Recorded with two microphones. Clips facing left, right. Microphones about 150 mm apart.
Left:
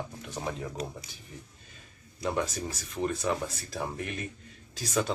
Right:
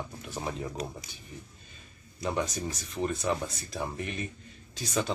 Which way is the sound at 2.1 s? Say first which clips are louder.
Even; centre (ahead or behind).